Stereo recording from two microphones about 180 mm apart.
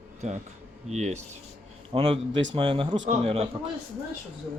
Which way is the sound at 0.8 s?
40° right (ahead or behind).